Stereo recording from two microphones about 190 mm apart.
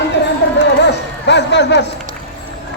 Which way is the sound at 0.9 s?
65° left (ahead or behind).